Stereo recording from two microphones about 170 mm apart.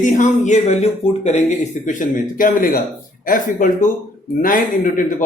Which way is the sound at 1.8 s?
50° left (ahead or behind).